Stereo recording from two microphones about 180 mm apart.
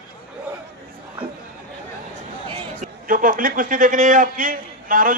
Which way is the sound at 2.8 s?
50° right (ahead or behind).